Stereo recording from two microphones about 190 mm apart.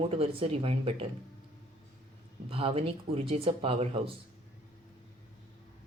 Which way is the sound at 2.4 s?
30° right (ahead or behind).